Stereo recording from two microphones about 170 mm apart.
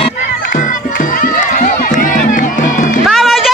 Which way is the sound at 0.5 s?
50° left (ahead or behind).